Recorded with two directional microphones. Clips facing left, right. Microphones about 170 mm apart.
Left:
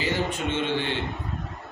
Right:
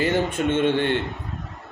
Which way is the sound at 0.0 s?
55° right (ahead or behind).